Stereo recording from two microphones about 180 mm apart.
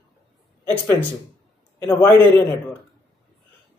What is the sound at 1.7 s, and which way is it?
Speech, 15° left (ahead or behind).